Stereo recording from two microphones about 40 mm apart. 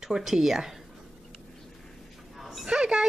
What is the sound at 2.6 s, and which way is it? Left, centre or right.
Speech, centre.